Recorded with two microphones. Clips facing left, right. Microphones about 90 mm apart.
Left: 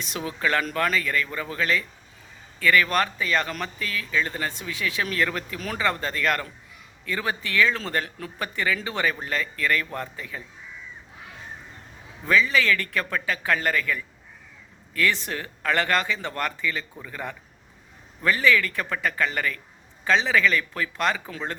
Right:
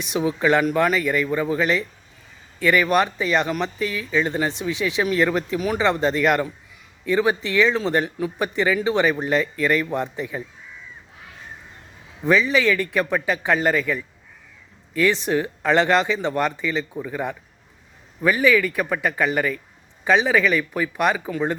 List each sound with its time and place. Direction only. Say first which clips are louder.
0.0 s speech: right 7 dB; 15° right (ahead or behind)
5.5 s speech: right 5 dB; 10° right (ahead or behind)
12.2 s speech: right 4 dB; 20° right (ahead or behind)